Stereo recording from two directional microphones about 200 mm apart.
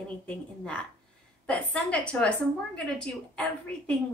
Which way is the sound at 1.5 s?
5° left (ahead or behind).